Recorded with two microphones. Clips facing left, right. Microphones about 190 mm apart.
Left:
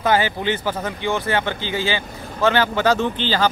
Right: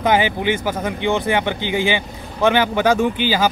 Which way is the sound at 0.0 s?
15° right (ahead or behind).